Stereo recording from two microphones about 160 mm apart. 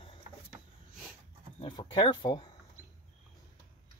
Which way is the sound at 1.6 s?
30° left (ahead or behind).